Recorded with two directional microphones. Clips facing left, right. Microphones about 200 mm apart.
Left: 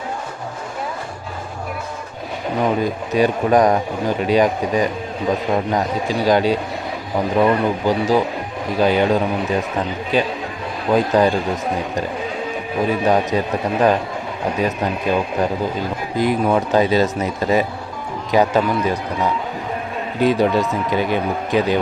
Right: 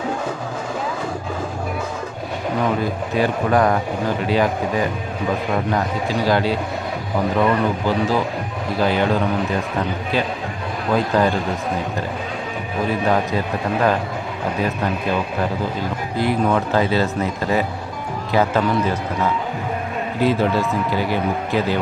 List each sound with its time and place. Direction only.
2.8 s speech: 15° left (ahead or behind)
10.9 s speech: 20° left (ahead or behind)
13.1 s speech: 20° left (ahead or behind)